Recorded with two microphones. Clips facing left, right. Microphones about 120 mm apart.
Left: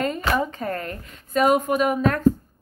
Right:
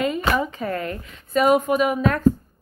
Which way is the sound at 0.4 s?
45° left (ahead or behind).